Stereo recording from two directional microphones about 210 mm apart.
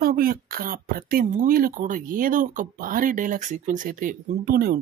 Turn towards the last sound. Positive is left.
turn(degrees=-45)  # may be behind; listen again after turning